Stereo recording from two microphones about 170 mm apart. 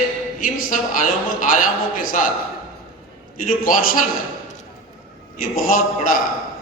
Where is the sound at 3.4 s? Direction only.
55° left (ahead or behind).